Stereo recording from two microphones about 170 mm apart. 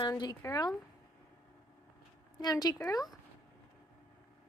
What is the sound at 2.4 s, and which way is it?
Speech, 20° left (ahead or behind).